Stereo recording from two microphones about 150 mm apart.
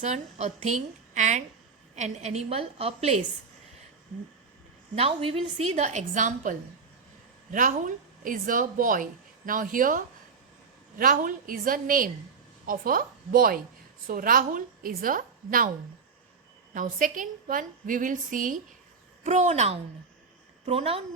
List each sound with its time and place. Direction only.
0.0 s a woman's voice: 50° right (ahead or behind)
4.9 s a woman's voice: 40° right (ahead or behind); by 15.7 s 65° right (ahead or behind)
16.7 s a woman's voice: 65° right (ahead or behind); by 21.0 s 40° right (ahead or behind)